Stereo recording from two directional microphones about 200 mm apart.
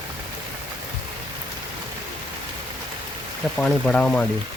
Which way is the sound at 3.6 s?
Centre (ahead or behind).